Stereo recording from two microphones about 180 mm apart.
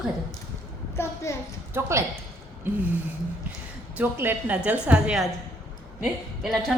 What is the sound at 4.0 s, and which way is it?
A woman's voice, 10° right (ahead or behind).